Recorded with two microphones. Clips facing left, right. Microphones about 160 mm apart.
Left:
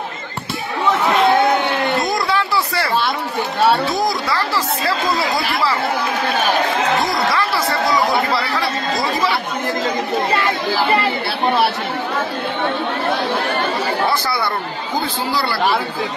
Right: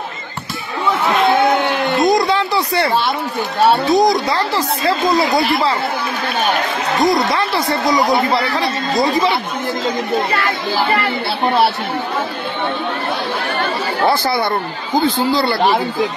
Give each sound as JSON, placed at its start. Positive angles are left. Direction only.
{"t": 2.0, "sound": "a sound", "side_deg": -20}
{"t": 3.9, "sound": "speech", "side_deg": -20}
{"t": 7.1, "sound": "speech", "side_deg": -20}
{"t": 14.0, "sound": "speech", "side_deg": -25}